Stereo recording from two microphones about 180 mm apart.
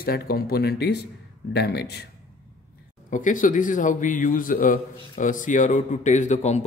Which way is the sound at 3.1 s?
45° left (ahead or behind).